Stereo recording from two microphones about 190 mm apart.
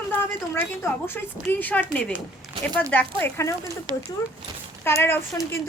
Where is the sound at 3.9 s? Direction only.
25° right (ahead or behind).